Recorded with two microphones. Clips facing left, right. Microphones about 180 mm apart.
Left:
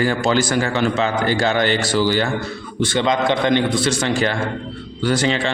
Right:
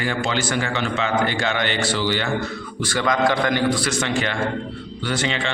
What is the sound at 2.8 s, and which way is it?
A man's voice, 25° left (ahead or behind).